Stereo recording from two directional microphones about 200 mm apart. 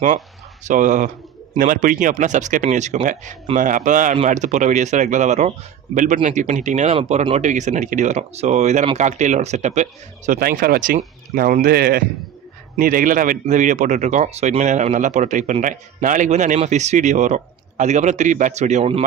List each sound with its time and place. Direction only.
0.7 s a man's voice: 40° right (ahead or behind)